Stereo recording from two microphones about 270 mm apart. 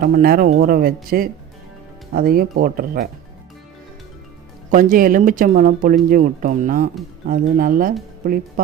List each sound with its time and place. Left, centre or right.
0.0 s speech: right
2.1 s speech: right
4.7 s speech: right